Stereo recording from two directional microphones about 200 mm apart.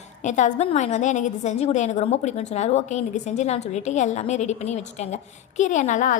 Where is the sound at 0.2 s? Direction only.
35° left (ahead or behind).